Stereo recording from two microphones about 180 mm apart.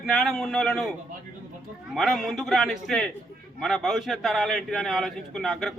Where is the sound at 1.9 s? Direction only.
Centre (ahead or behind).